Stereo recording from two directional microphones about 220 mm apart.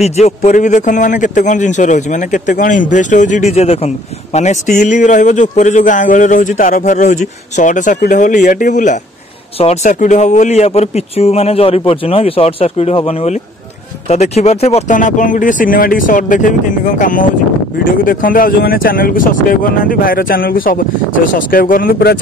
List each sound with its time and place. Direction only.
0.0 s a man's voice: 30° left (ahead or behind)